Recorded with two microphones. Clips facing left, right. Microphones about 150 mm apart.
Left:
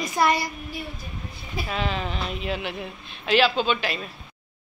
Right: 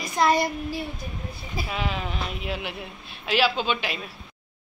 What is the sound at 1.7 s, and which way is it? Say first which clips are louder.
Speech: left 2 dB; 10° right (ahead or behind).